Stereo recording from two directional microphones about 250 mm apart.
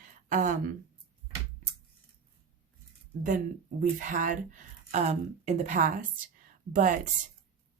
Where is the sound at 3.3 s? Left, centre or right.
Right.